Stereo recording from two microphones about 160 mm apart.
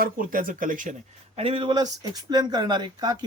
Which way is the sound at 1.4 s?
35° right (ahead or behind).